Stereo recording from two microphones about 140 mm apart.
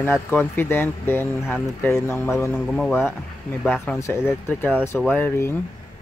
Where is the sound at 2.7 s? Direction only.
5° left (ahead or behind).